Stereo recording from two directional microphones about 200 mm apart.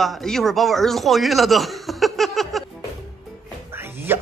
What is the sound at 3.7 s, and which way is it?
Music, 10° right (ahead or behind).